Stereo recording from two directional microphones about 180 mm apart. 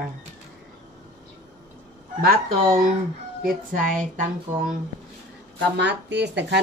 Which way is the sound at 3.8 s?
45° right (ahead or behind).